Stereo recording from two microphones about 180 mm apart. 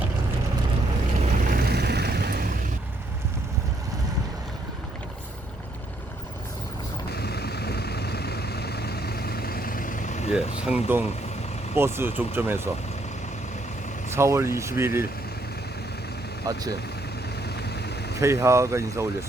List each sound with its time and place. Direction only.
1.2 s vehicle: 55° right (ahead or behind)
7.1 s vehicle: 65° left (ahead or behind); by 10.3 s 45° left (ahead or behind)
10.3 s a sound: 5° right (ahead or behind)
11.8 s speech: 15° right (ahead or behind)
14.1 s speech: 15° right (ahead or behind)
16.5 s speech: 20° right (ahead or behind)
17.7 s vehicle: 65° left (ahead or behind)
18.2 s speech: 15° right (ahead or behind)